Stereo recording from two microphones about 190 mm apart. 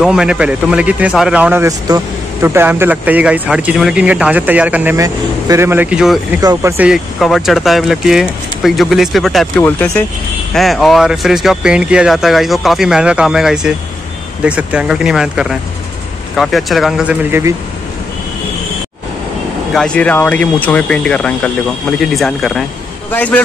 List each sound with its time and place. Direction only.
0.0 s a man's voice: 5° right (ahead or behind)
6.4 s speech: 20° right (ahead or behind)
6.8 s speech: centre (ahead or behind)
19.7 s speech: 5° left (ahead or behind)